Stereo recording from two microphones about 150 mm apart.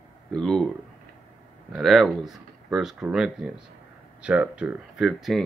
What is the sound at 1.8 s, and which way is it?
Speech, centre (ahead or behind).